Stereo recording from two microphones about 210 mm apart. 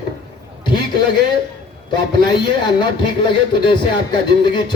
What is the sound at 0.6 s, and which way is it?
A man's voice, 20° left (ahead or behind).